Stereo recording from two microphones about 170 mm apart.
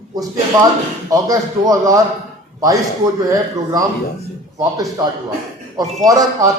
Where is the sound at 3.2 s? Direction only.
20° right (ahead or behind).